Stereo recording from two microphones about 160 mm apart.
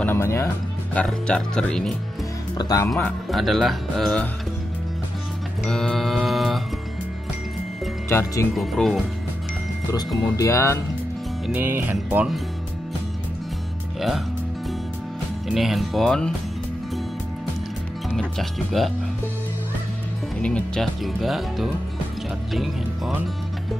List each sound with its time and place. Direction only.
0.0 s music: 15° left (ahead or behind)
0.9 s speech: 5° left (ahead or behind)
2.5 s speech: 25° left (ahead or behind)
2.9 s speech: 5° left (ahead or behind)
5.6 s music: 5° left (ahead or behind)
8.1 s speech: 15° left (ahead or behind)
8.5 s speech: centre (ahead or behind)
9.8 s speech: 20° left (ahead or behind)
11.4 s speech: 10° right (ahead or behind)
13.9 s speech: centre (ahead or behind)
15.4 s speech: centre (ahead or behind)
18.1 s speech: centre (ahead or behind)
20.4 s speech: 5° left (ahead or behind)